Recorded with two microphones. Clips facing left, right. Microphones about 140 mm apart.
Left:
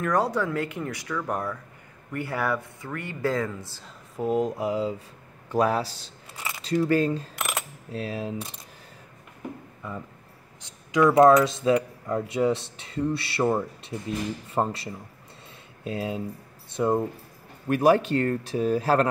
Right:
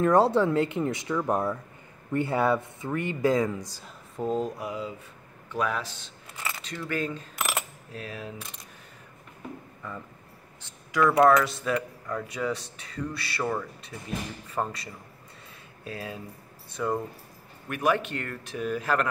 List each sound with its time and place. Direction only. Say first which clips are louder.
0.0 s speech: right 4 dB; 25° right (ahead or behind)
4.2 s speech: left 4 dB; 15° left (ahead or behind); by 7.2 s 35° left (ahead or behind)
7.3 s coin: even; 5° right (ahead or behind)
7.9 s speech: left 7 dB; 30° left (ahead or behind)
9.8 s speech: left 4 dB; 15° left (ahead or behind)
17.6 s speech: left 7 dB; 35° left (ahead or behind)